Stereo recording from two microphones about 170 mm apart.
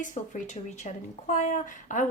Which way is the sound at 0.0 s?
50° left (ahead or behind).